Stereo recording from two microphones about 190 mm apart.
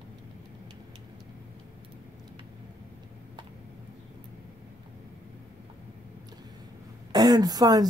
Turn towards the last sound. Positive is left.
turn(degrees=-20)  # may be behind; listen again after turning